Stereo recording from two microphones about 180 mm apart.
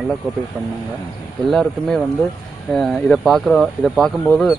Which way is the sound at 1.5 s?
Centre (ahead or behind).